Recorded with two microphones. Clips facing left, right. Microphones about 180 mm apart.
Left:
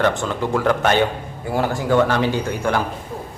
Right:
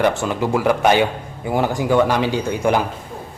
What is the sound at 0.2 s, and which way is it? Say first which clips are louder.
A man's voice: right 2 dB; 10° right (ahead or behind).